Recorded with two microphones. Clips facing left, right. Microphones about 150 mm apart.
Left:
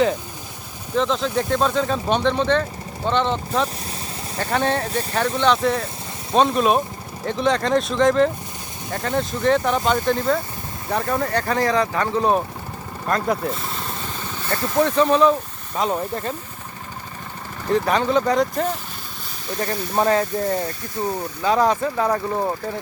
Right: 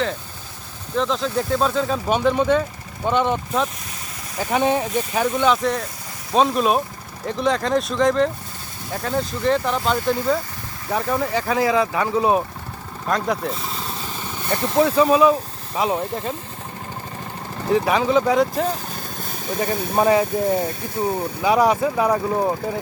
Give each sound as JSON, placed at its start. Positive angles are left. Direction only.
{"t": 0.9, "sound": "speech", "side_deg": 0}
{"t": 14.4, "sound": "speech", "side_deg": -20}
{"t": 14.8, "sound": "speech", "side_deg": -5}
{"t": 17.7, "sound": "speech", "side_deg": -5}